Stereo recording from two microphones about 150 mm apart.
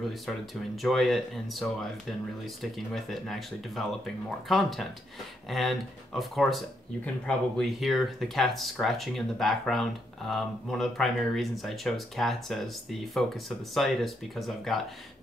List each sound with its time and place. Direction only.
0.8 s speech: centre (ahead or behind)